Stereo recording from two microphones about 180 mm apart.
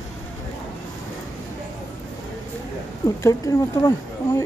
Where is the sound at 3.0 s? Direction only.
20° left (ahead or behind).